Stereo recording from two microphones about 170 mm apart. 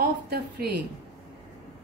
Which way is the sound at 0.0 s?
70° right (ahead or behind).